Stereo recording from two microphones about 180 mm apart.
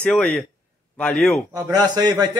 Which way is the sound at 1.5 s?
20° right (ahead or behind).